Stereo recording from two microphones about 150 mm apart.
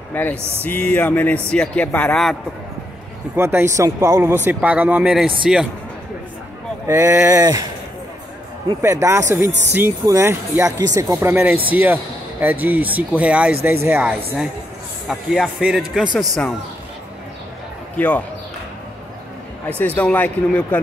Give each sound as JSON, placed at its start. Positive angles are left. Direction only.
{"t": 0.1, "sound": "speech", "side_deg": 10}
{"t": 0.4, "sound": "speech", "side_deg": -15}
{"t": 0.7, "sound": "speech", "side_deg": 10}
{"t": 3.3, "sound": "speech", "side_deg": -20}
{"t": 6.9, "sound": "speech", "side_deg": -20}
{"t": 8.8, "sound": "speech", "side_deg": -20}
{"t": 17.9, "sound": "speech", "side_deg": 10}
{"t": 19.8, "sound": "speech", "side_deg": 10}